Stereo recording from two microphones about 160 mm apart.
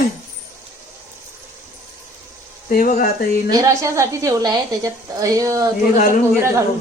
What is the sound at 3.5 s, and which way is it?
A woman's voice, 20° right (ahead or behind).